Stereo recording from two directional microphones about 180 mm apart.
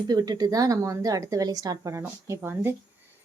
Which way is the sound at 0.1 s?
20° right (ahead or behind).